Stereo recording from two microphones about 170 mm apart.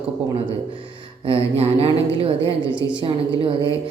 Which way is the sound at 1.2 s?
35° right (ahead or behind).